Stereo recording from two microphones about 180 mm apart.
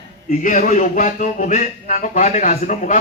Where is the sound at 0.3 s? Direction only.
45° left (ahead or behind).